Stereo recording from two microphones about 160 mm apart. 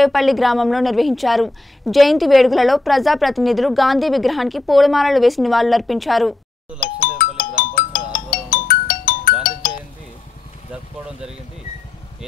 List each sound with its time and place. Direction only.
0.0 s a woman's voice: centre (ahead or behind)
6.8 s music: 60° left (ahead or behind)
10.7 s vehicle: 5° right (ahead or behind)